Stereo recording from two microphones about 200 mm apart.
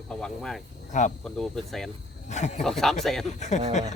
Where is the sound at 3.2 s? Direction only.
35° left (ahead or behind).